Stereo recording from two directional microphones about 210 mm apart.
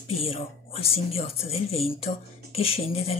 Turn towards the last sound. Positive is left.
turn(degrees=30)  # may be behind; listen again after turning